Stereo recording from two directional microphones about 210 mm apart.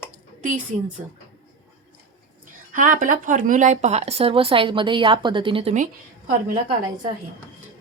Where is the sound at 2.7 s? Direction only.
40° right (ahead or behind).